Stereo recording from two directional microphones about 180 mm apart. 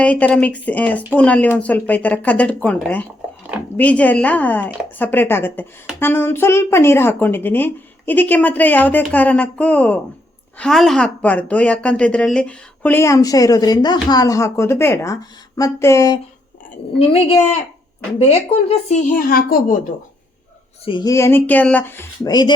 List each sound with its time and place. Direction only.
0.0 s speech: 10° left (ahead or behind)
3.8 s speech: 10° left (ahead or behind)
17.0 s speech: 30° left (ahead or behind); by 19.7 s 50° left (ahead or behind)
20.8 s speech: 25° left (ahead or behind)